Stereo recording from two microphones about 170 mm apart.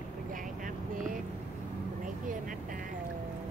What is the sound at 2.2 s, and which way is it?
Vehicle, 55° right (ahead or behind).